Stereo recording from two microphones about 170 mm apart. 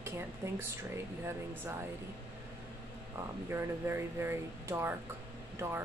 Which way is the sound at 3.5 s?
15° right (ahead or behind).